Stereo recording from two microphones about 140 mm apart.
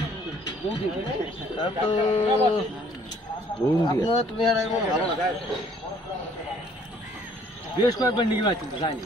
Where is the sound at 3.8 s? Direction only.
30° left (ahead or behind).